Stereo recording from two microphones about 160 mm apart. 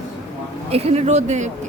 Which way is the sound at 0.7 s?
40° right (ahead or behind).